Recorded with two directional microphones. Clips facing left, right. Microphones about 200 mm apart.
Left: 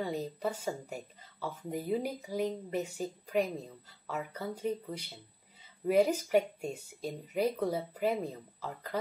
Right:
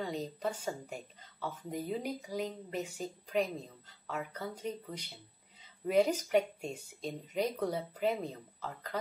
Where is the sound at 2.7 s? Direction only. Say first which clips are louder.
Left 3 dB; 5° left (ahead or behind).